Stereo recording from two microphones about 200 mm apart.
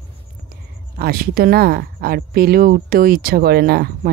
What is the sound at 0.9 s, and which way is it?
Speech, 50° right (ahead or behind).